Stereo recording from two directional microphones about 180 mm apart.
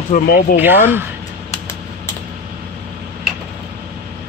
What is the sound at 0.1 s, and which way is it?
Speech, 50° left (ahead or behind).